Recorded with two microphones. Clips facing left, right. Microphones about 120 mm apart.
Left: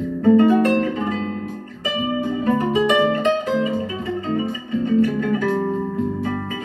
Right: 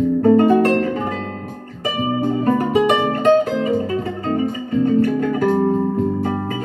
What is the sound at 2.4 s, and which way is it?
Music, 50° right (ahead or behind).